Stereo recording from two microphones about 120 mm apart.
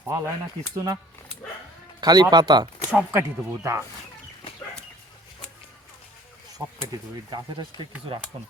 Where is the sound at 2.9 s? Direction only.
10° right (ahead or behind).